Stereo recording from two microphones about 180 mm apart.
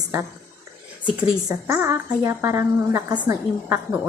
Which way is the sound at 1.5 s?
15° right (ahead or behind).